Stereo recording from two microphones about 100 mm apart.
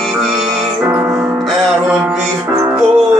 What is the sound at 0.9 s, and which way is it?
Music, 15° right (ahead or behind).